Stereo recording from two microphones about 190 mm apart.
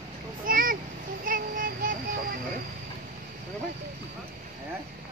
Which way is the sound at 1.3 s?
50° right (ahead or behind).